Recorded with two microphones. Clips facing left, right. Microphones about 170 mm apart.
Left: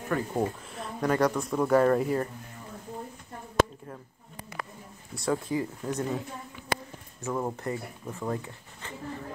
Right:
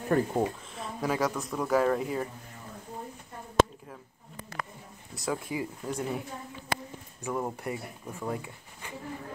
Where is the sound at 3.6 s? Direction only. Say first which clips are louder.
Right 1 dB; 25° right (ahead or behind).